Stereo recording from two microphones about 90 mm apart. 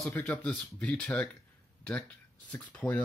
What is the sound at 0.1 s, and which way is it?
Speech, 25° left (ahead or behind).